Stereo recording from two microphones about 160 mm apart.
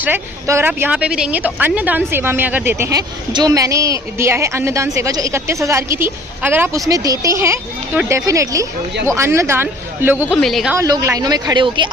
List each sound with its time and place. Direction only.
0.0 s a woman's voice: 15° right (ahead or behind)
10.4 s speech: centre (ahead or behind)
10.8 s a woman's voice: 20° right (ahead or behind)